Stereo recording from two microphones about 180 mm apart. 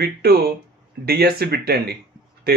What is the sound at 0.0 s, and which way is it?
Speech, 60° right (ahead or behind).